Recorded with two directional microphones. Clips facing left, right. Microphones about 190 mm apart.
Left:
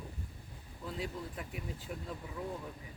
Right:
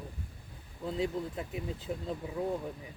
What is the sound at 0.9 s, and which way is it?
Speech, 25° right (ahead or behind).